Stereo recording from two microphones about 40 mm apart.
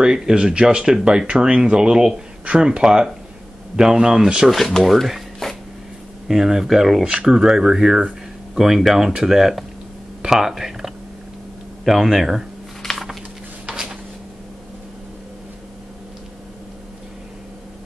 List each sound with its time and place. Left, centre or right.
0.0 s speech: centre
4.8 s speech: centre
5.4 s a sound: centre
6.2 s speech: centre
7.1 s speech: centre
12.8 s a sound: centre